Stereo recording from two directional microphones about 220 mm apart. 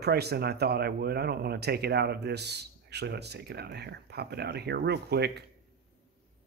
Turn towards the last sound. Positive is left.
turn(degrees=-50)  # may be behind; listen again after turning